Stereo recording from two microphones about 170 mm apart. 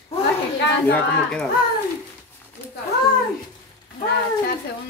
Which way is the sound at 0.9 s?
5° left (ahead or behind).